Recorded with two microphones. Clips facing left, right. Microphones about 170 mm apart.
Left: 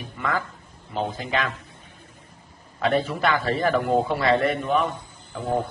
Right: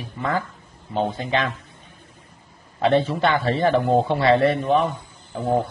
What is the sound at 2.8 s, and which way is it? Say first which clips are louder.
Speech: right 4 dB; 25° right (ahead or behind).